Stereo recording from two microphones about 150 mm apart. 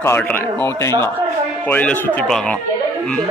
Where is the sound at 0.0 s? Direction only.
15° left (ahead or behind).